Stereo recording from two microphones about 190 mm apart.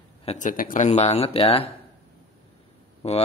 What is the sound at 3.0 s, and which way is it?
Speech, 30° left (ahead or behind).